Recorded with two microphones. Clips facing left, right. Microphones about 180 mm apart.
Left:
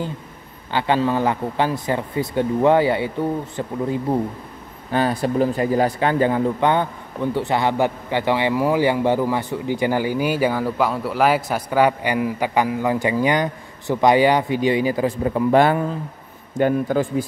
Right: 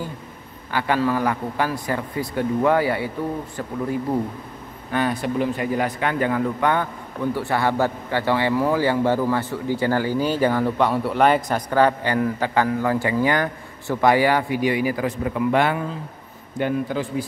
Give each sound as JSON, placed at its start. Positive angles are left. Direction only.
{"t": 0.7, "sound": "a man's voice", "side_deg": 25}
{"t": 4.9, "sound": "a man's voice", "side_deg": 35}